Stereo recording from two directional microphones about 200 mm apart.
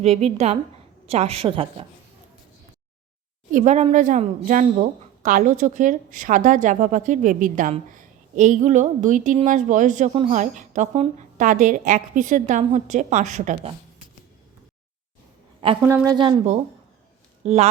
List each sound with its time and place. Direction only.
0.0 s a woman's voice: 30° right (ahead or behind)
3.5 s a woman's voice: 35° right (ahead or behind)
15.8 s a woman's voice: 10° right (ahead or behind)
16.1 s a woman's voice: 25° right (ahead or behind)